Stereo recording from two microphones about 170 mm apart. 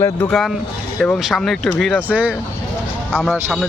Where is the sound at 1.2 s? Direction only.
Centre (ahead or behind).